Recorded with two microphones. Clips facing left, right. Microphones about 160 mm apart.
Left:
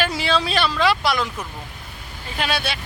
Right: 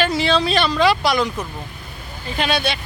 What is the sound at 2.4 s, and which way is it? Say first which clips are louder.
Speech: right 4 dB; 5° left (ahead or behind).